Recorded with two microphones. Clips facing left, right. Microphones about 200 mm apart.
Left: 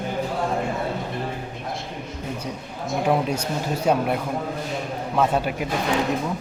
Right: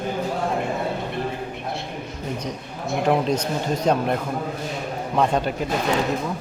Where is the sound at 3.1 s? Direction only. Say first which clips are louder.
Right 2 dB; 10° left (ahead or behind).